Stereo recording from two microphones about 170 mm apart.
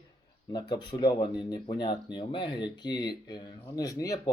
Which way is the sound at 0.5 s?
25° left (ahead or behind).